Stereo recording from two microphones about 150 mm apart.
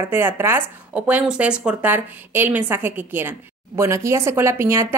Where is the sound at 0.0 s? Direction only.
15° right (ahead or behind).